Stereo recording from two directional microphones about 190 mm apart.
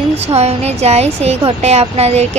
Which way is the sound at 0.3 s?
35° right (ahead or behind).